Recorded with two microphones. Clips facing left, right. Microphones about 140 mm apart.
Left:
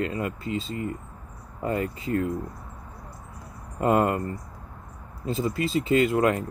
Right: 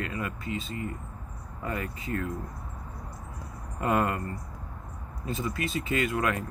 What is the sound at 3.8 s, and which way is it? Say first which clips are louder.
Speech: left 5 dB; 25° left (ahead or behind).